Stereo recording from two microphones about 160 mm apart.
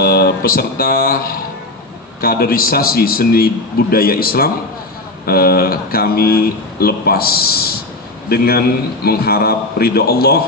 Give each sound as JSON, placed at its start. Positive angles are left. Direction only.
{"t": 0.0, "sound": "speech", "side_deg": 80}
{"t": 2.2, "sound": "speech", "side_deg": 65}